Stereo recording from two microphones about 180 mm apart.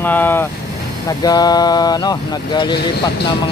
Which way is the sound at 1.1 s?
20° left (ahead or behind).